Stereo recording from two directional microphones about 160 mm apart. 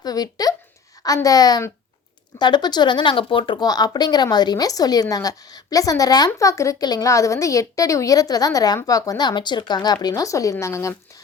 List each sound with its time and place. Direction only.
0.0 s speech: 25° left (ahead or behind)